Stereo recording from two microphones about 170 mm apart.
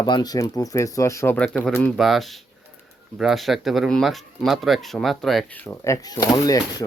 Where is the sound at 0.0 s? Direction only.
25° left (ahead or behind).